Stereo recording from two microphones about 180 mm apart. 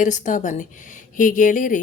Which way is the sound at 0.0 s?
45° left (ahead or behind).